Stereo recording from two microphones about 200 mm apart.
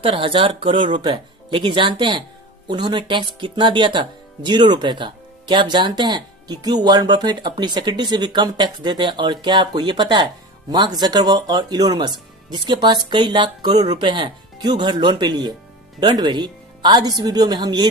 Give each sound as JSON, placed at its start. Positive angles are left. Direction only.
{"t": 0.0, "sound": "speech", "side_deg": -25}